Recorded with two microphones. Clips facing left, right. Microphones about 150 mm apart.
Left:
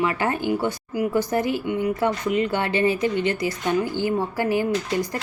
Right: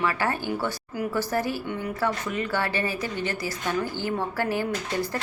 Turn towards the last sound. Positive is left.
turn(degrees=15)  # may be behind; listen again after turning